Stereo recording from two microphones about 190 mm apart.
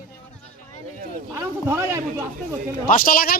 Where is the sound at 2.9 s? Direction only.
45° left (ahead or behind).